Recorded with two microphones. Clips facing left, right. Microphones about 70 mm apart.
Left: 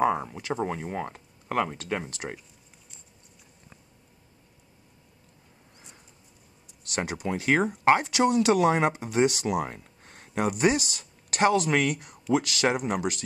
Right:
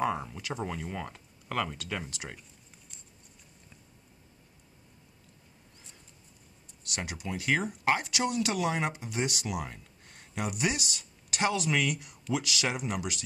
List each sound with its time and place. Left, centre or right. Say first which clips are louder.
0.0 s speech: left 6 dB; left
6.9 s speech: left 7 dB; left